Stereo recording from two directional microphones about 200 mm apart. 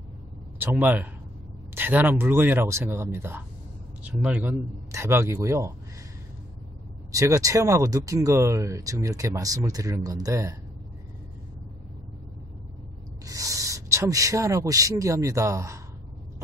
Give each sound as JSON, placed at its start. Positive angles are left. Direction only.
{"t": 0.6, "sound": "speech", "side_deg": -10}
{"t": 7.1, "sound": "speech", "side_deg": -15}
{"t": 13.2, "sound": "speech", "side_deg": -15}